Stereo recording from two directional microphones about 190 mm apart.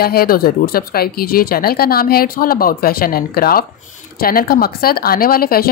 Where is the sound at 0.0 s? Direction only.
55° left (ahead or behind).